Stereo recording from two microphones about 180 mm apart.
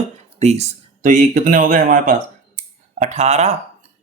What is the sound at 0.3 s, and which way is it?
Speech, 35° right (ahead or behind).